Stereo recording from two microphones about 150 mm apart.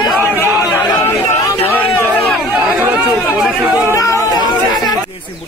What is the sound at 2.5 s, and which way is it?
Chatter, 10° right (ahead or behind).